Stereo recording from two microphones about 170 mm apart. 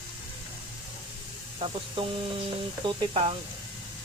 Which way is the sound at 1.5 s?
30° right (ahead or behind).